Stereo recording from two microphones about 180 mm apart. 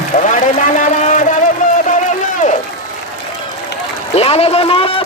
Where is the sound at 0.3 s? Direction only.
45° left (ahead or behind).